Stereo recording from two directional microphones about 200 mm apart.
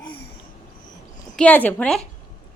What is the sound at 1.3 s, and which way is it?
Speech, 10° left (ahead or behind).